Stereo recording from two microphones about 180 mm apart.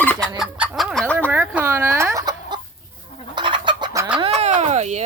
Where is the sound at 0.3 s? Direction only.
5° right (ahead or behind).